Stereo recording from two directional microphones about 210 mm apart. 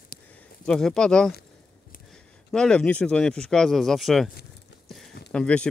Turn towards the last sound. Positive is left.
turn(degrees=5)  # may be behind; listen again after turning